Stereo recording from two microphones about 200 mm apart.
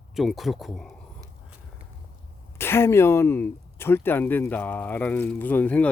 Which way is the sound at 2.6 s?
10° left (ahead or behind).